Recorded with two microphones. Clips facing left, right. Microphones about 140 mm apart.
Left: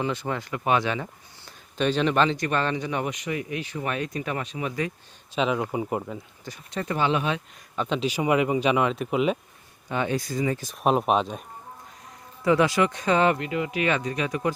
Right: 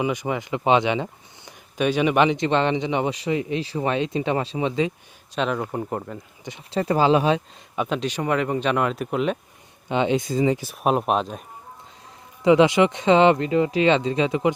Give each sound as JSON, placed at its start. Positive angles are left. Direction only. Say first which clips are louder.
{"t": 0.0, "sound": "speech", "louder": "right 4 dB", "side_deg": -15}
{"t": 5.3, "sound": "speech", "louder": "even", "side_deg": 0}
{"t": 6.4, "sound": "speech", "louder": "right 8 dB", "side_deg": -25}
{"t": 7.8, "sound": "speech", "louder": "right 1 dB", "side_deg": 0}
{"t": 9.9, "sound": "speech", "louder": "right 5 dB", "side_deg": -20}
{"t": 10.6, "sound": "speech", "louder": "right 1 dB", "side_deg": -5}
{"t": 12.4, "sound": "speech", "louder": "right 5 dB", "side_deg": -20}